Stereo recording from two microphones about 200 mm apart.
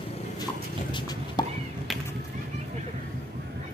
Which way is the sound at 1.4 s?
20° left (ahead or behind).